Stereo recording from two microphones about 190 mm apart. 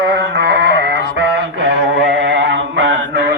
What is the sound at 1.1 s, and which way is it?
Mantra, 65° right (ahead or behind).